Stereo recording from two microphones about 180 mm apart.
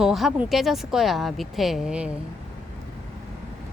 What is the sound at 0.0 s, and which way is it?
Speech, centre (ahead or behind).